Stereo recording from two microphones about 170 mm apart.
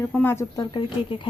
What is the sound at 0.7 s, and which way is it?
Speech, 30° left (ahead or behind).